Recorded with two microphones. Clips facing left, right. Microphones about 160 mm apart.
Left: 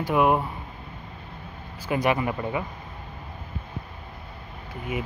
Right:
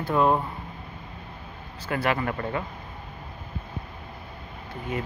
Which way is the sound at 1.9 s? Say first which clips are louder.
Left 2 dB; 15° left (ahead or behind).